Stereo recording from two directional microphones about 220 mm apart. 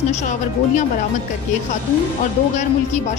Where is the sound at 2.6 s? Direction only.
30° left (ahead or behind).